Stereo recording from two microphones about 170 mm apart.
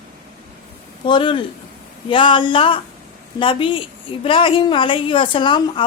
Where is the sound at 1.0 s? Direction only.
30° left (ahead or behind).